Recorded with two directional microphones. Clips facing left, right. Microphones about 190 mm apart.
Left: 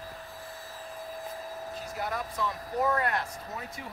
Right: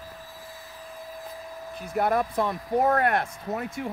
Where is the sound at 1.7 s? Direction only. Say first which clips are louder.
Right 11 dB; 60° right (ahead or behind).